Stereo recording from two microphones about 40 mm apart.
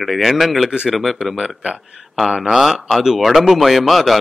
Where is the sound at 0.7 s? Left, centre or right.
Right.